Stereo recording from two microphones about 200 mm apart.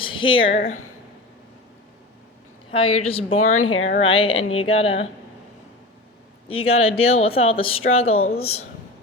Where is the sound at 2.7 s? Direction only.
30° left (ahead or behind).